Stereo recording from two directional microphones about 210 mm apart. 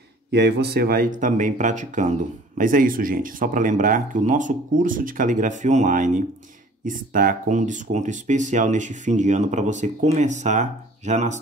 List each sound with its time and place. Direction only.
0.3 s speech: 55° right (ahead or behind); by 11.3 s 35° right (ahead or behind)